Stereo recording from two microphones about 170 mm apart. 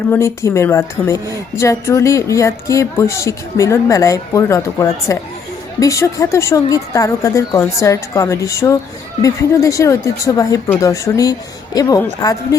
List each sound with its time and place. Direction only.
0.1 s a woman's voice: 15° left (ahead or behind)